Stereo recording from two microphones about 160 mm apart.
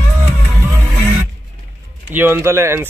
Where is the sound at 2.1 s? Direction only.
15° right (ahead or behind).